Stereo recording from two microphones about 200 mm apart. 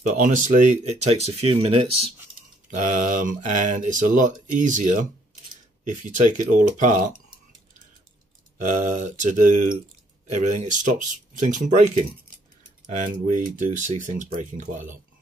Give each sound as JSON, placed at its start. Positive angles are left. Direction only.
{"t": 0.1, "sound": "speech", "side_deg": -40}
{"t": 2.7, "sound": "speech", "side_deg": -40}
{"t": 8.6, "sound": "speech", "side_deg": -35}